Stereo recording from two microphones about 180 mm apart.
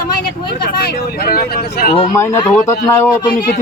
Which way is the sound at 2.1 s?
15° left (ahead or behind).